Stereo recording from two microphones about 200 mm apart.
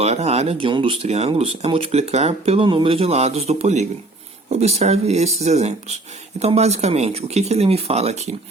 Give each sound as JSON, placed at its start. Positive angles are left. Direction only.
{"t": 0.0, "sound": "speech", "side_deg": -30}